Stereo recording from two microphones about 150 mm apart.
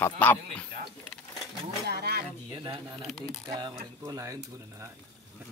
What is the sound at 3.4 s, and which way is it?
Speech, 30° right (ahead or behind).